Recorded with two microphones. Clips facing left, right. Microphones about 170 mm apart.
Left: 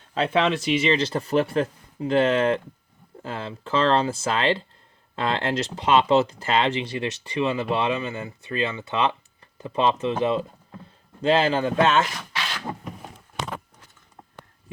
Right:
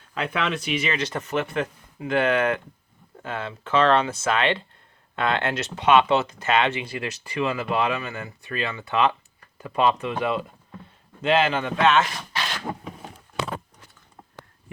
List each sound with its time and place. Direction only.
0.1 s speech: 30° left (ahead or behind)